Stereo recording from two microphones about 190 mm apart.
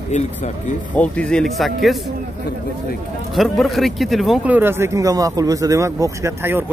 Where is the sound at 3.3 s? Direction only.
Centre (ahead or behind).